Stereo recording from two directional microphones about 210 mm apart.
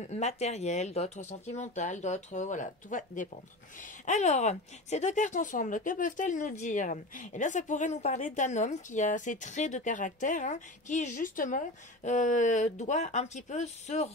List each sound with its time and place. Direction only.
0.0 s speech: 30° left (ahead or behind)